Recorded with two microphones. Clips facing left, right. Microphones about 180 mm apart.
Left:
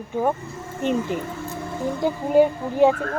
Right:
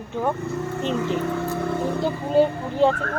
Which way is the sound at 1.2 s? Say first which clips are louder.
Right 6 dB; 65° right (ahead or behind).